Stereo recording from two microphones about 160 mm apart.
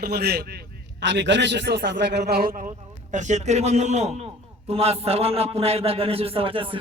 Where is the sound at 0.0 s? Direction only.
85° right; by 2.6 s 65° right (ahead or behind).